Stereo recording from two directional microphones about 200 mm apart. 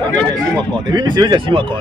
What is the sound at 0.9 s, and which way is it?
Speech, 20° right (ahead or behind).